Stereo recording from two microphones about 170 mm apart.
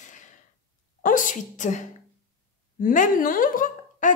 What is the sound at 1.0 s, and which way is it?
A woman's voice, 50° left (ahead or behind).